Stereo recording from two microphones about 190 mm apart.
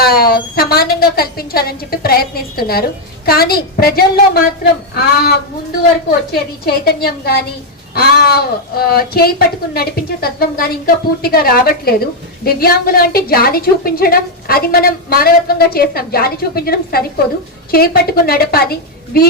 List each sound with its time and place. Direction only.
0.0 s a woman's voice: 50° left (ahead or behind)